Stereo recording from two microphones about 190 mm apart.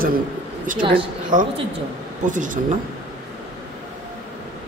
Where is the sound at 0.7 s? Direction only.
25° right (ahead or behind).